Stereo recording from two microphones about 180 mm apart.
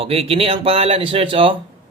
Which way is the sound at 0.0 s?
35° right (ahead or behind).